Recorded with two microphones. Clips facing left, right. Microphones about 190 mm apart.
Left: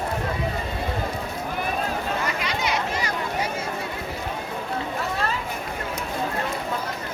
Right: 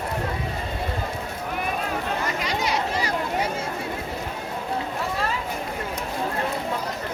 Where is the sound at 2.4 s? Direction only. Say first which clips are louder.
Right 1 dB; 40° right (ahead or behind).